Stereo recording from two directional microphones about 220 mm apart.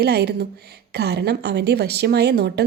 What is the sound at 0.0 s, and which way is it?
A woman's voice, 45° right (ahead or behind).